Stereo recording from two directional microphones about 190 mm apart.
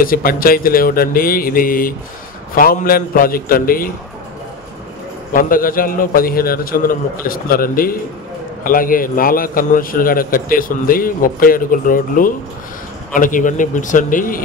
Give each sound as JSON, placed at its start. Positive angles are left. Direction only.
{"t": 0.0, "sound": "a man's voice", "side_deg": 50}
{"t": 5.3, "sound": "a man's voice", "side_deg": 45}